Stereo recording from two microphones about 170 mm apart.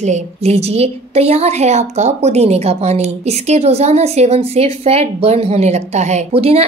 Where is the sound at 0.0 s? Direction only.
40° right (ahead or behind).